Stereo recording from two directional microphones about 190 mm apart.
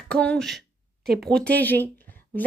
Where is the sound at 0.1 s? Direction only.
5° left (ahead or behind).